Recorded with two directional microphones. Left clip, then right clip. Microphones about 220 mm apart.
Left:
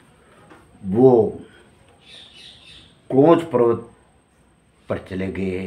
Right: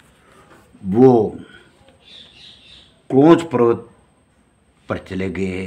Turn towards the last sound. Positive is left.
turn(degrees=-50)  # may be behind; listen again after turning